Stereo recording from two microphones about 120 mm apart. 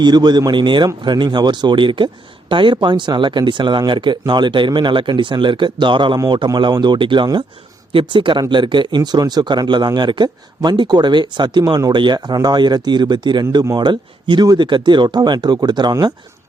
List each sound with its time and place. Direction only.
0.0 s speech: 35° right (ahead or behind)